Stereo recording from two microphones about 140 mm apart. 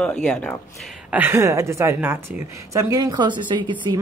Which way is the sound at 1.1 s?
15° right (ahead or behind).